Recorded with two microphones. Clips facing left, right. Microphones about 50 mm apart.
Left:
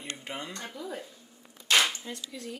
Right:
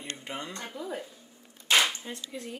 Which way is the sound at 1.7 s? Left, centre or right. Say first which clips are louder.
Even; centre.